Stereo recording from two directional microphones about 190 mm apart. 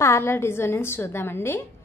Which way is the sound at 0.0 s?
15° left (ahead or behind).